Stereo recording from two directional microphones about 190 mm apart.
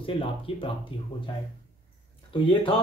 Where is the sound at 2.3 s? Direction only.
25° left (ahead or behind).